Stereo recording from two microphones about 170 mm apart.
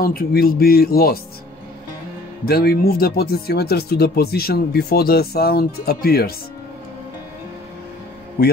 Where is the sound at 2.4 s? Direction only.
65° left (ahead or behind).